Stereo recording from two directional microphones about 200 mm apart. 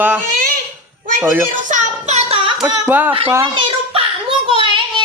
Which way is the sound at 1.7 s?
35° right (ahead or behind).